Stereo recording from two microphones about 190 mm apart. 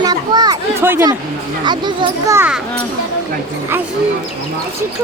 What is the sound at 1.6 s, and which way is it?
Speech, 25° right (ahead or behind).